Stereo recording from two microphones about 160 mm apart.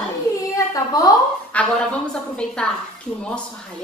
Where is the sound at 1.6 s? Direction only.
10° left (ahead or behind).